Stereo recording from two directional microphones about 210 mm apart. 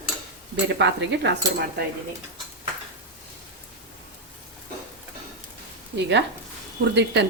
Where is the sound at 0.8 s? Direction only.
55° right (ahead or behind).